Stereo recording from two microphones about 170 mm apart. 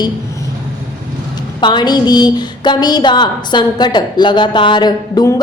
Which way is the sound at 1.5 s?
25° left (ahead or behind).